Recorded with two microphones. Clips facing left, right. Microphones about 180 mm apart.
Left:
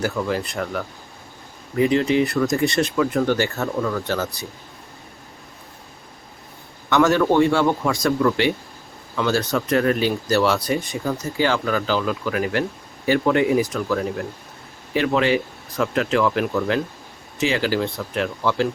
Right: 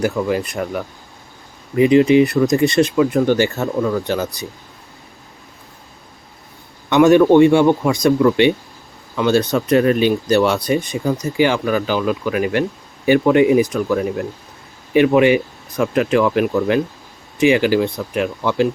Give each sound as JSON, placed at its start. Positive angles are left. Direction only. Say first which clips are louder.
{"t": 0.0, "sound": "speech", "louder": "right 5 dB", "side_deg": -15}
{"t": 1.8, "sound": "speech", "louder": "right 7 dB", "side_deg": -15}
{"t": 6.9, "sound": "speech", "louder": "right 7 dB", "side_deg": -20}